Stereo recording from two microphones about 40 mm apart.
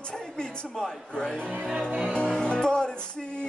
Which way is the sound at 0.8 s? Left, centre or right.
Centre.